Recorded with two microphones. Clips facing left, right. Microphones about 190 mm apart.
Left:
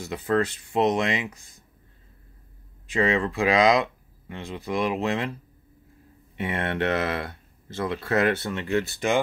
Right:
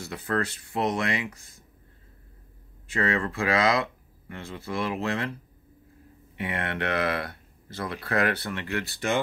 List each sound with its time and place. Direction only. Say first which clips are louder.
0.0 s speech: left 5 dB; 20° left (ahead or behind)
2.9 s speech: left 4 dB; 15° left (ahead or behind)
6.3 s speech: left 3 dB; 25° left (ahead or behind)